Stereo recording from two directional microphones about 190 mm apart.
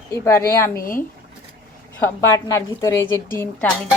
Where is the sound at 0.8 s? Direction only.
45° left (ahead or behind).